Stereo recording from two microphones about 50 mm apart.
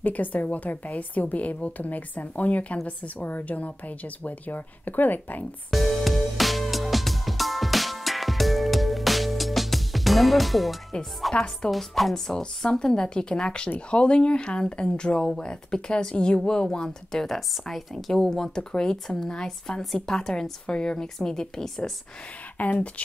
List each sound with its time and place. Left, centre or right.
0.0 s a woman's voice: left
5.7 s music: centre
11.3 s speech: centre
11.7 s speech: centre
19.8 s a woman's voice: centre
22.6 s speech: left